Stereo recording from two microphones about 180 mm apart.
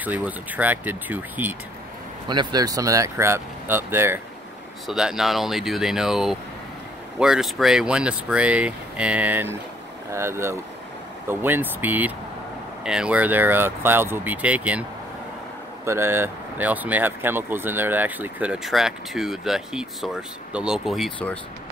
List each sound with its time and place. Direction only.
0.0 s speech: 10° right (ahead or behind)
2.2 s speech: 25° right (ahead or behind); by 21.4 s 5° left (ahead or behind)